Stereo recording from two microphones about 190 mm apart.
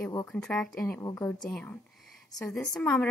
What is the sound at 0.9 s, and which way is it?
Speech, 15° left (ahead or behind).